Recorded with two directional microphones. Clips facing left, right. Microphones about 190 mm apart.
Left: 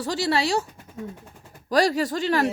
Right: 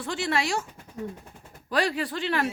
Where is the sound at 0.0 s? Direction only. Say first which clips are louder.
Left 4 dB; 40° left (ahead or behind).